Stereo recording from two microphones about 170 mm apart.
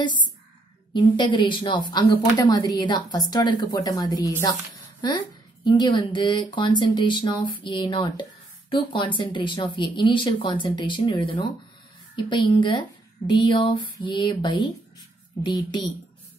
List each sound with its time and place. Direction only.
0.0 s a woman's voice: 25° left (ahead or behind)